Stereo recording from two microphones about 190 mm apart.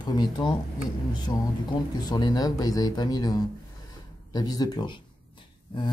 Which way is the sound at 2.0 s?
20° left (ahead or behind).